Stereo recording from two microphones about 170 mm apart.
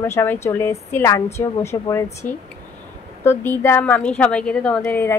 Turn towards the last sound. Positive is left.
turn(degrees=15)  # may be behind; listen again after turning